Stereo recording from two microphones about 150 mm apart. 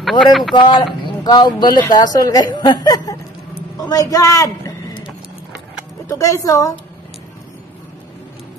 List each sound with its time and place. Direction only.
0.0 s speech: centre (ahead or behind)
1.0 s a woman's voice: 30° left (ahead or behind)
6.0 s a woman's voice: 20° left (ahead or behind)